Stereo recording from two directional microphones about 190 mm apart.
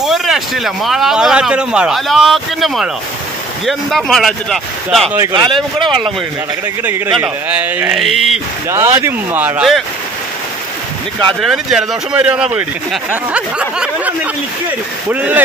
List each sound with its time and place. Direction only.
0.0 s speech: centre (ahead or behind)
5.3 s speech: 25° right (ahead or behind)
5.8 s speech: centre (ahead or behind)
7.2 s speech: 10° right (ahead or behind)
8.6 s speech: 15° right (ahead or behind)
11.4 s speech: centre (ahead or behind)